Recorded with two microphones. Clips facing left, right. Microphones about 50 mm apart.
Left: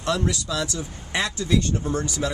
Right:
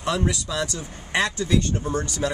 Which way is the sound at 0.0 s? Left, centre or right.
Centre.